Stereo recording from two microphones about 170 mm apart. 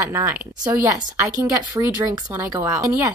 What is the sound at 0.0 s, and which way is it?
A woman's voice, 15° right (ahead or behind).